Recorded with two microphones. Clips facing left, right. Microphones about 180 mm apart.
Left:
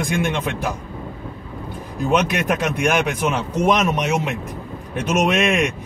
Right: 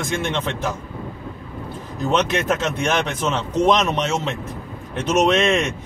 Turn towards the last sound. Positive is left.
turn(degrees=-25)  # may be behind; listen again after turning